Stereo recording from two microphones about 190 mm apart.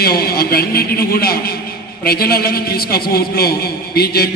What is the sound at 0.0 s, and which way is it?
A man's voice, 55° left (ahead or behind).